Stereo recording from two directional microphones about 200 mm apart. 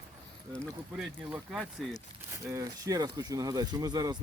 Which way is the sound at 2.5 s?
15° right (ahead or behind).